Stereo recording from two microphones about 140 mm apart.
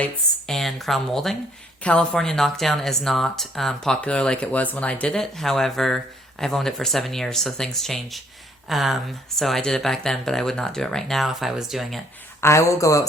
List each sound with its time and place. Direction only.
0.0 s a woman's voice: 5° left (ahead or behind)
12.4 s speech: 20° left (ahead or behind)